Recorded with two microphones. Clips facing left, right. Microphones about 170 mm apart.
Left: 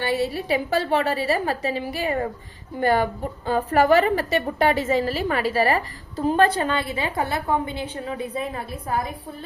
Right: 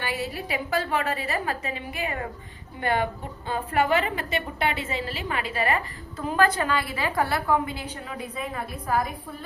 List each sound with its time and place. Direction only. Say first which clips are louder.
0.0 s a woman's voice: left 7 dB; 30° left (ahead or behind)